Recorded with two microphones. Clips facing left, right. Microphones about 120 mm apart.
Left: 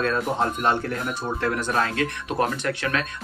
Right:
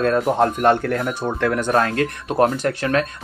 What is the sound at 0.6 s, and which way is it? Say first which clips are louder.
Speech: right 6 dB; 60° right (ahead or behind).